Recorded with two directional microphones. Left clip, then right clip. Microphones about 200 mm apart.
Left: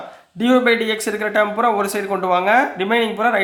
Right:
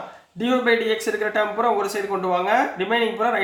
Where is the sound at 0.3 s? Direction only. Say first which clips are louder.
Left 4 dB; 40° left (ahead or behind).